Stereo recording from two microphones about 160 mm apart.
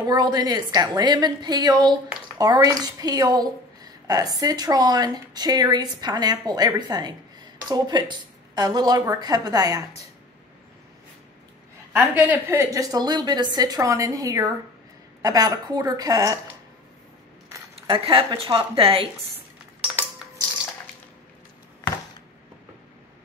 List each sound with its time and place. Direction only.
0.0 s a woman's voice: 25° right (ahead or behind)
12.0 s a woman's voice: 15° right (ahead or behind)
17.8 s a woman's voice: 35° right (ahead or behind)